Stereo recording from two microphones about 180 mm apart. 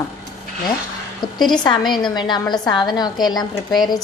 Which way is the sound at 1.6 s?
25° left (ahead or behind).